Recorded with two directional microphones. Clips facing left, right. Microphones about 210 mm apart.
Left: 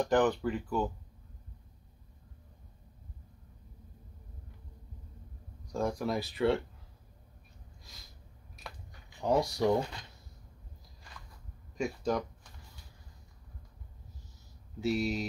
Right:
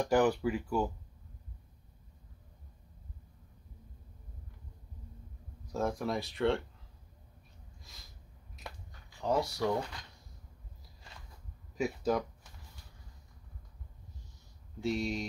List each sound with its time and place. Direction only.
0.0 s speech: 10° right (ahead or behind)
5.7 s speech: centre (ahead or behind)
7.8 s a sound: centre (ahead or behind)
9.2 s speech: 15° left (ahead or behind)
11.7 s speech: 5° right (ahead or behind)
14.8 s speech: 5° left (ahead or behind)